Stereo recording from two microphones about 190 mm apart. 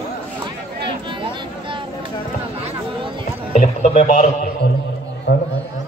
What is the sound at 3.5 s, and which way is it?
Music, 40° left (ahead or behind).